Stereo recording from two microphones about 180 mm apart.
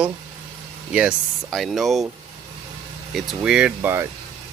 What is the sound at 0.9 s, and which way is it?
Speech, centre (ahead or behind).